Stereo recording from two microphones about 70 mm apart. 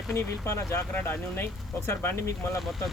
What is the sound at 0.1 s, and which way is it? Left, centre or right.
Speech, left.